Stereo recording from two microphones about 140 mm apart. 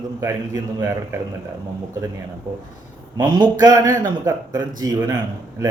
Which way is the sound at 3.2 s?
35° right (ahead or behind).